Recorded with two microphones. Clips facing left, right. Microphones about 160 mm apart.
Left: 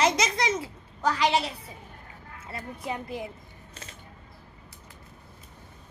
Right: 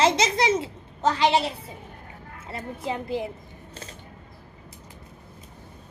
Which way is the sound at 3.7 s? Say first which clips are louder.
Right 5 dB; 30° right (ahead or behind).